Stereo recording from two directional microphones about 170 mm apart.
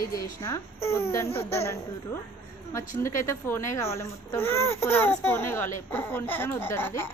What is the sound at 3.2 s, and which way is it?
A child's voice, 15° left (ahead or behind).